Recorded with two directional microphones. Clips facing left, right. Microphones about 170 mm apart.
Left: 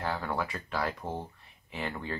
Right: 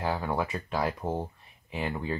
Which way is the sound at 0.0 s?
15° right (ahead or behind).